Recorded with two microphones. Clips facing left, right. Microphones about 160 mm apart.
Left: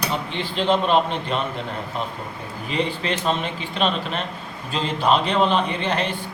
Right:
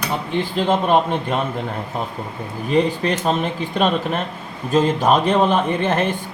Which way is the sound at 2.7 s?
45° right (ahead or behind).